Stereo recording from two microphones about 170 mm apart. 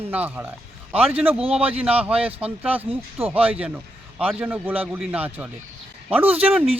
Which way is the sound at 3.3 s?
35° right (ahead or behind).